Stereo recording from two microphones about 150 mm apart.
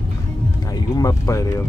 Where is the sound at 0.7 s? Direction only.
25° left (ahead or behind).